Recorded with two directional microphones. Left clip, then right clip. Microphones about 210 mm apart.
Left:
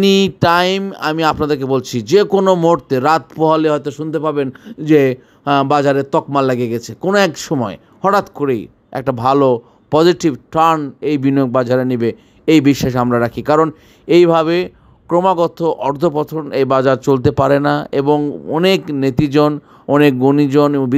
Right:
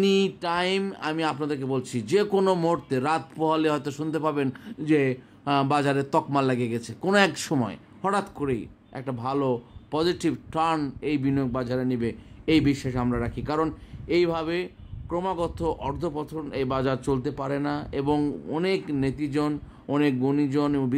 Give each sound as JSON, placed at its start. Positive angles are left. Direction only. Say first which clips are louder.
{"t": 0.0, "sound": "a man's voice", "louder": "left 11 dB", "side_deg": 35}